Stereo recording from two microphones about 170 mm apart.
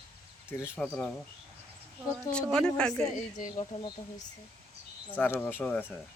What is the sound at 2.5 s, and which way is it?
Speech, 5° left (ahead or behind).